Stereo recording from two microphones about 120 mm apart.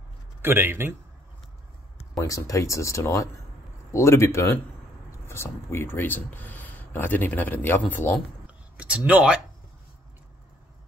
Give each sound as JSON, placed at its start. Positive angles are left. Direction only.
{"t": 0.4, "sound": "speech", "side_deg": -20}
{"t": 2.1, "sound": "speech", "side_deg": 30}
{"t": 8.7, "sound": "speech", "side_deg": -10}